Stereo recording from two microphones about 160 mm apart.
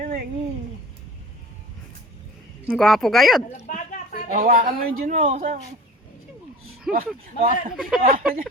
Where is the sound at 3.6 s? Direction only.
55° left (ahead or behind).